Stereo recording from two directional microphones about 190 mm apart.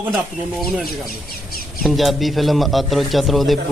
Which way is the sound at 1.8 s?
Centre (ahead or behind).